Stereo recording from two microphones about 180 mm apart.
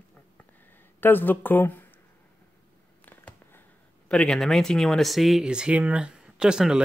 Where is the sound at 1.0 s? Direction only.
10° left (ahead or behind).